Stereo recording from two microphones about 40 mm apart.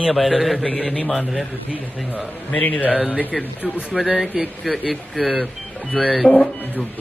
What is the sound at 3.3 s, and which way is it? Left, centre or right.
Speech, centre.